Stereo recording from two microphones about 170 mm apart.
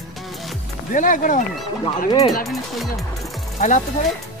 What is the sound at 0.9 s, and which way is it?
Speech, 50° left (ahead or behind).